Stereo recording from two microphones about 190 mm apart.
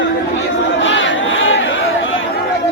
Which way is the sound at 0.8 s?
75° left (ahead or behind).